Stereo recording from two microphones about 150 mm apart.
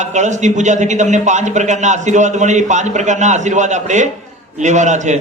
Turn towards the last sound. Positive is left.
turn(degrees=-50)  # may be behind; listen again after turning